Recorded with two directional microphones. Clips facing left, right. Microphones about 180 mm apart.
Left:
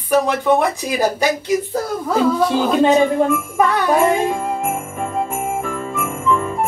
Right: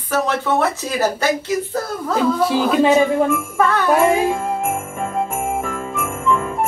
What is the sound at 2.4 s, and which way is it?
Speech, 5° right (ahead or behind).